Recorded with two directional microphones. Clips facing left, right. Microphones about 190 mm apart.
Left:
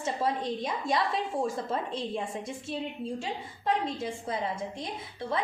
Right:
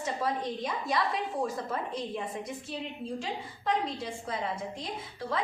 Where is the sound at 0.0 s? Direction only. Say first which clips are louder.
Left 2 dB; 25° left (ahead or behind).